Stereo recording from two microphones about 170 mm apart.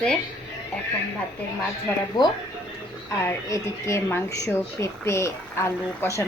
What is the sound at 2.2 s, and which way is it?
Speech, 25° left (ahead or behind).